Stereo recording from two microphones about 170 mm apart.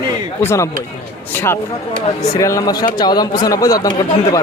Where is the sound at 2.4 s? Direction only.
20° left (ahead or behind).